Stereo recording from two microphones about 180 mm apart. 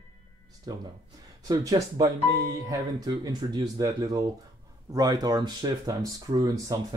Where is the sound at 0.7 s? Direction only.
20° right (ahead or behind).